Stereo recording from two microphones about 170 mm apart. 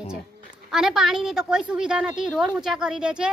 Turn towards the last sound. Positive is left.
turn(degrees=-5)  # may be behind; listen again after turning